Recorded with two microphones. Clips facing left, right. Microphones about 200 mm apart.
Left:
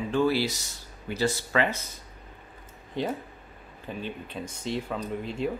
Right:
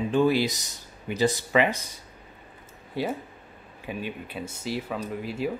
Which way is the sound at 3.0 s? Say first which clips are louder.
Right 1 dB; 5° right (ahead or behind).